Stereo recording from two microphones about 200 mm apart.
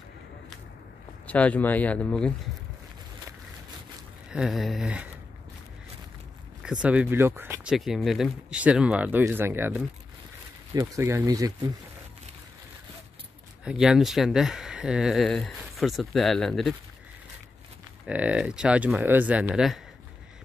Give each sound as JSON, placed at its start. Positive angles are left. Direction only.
{"t": 1.2, "sound": "speech", "side_deg": 5}
{"t": 4.3, "sound": "speech", "side_deg": 0}
{"t": 6.6, "sound": "speech", "side_deg": -5}
{"t": 7.7, "sound": "speech", "side_deg": 0}
{"t": 13.7, "sound": "speech", "side_deg": -5}
{"t": 18.0, "sound": "speech", "side_deg": -5}